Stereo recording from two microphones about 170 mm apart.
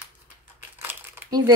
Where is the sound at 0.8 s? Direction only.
10° right (ahead or behind).